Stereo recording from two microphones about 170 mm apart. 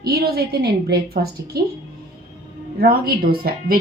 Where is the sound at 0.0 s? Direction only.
65° right (ahead or behind).